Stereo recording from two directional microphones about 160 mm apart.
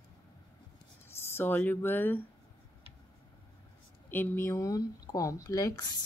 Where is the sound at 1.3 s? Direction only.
15° left (ahead or behind).